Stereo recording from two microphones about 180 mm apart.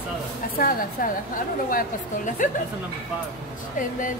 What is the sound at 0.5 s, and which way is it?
A woman's voice, 50° left (ahead or behind).